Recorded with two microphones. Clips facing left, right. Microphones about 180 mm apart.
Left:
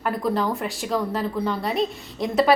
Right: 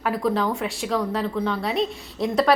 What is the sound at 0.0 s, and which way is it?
A woman's voice, centre (ahead or behind).